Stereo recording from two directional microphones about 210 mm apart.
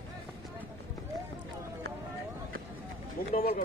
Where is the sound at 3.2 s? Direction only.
45° left (ahead or behind).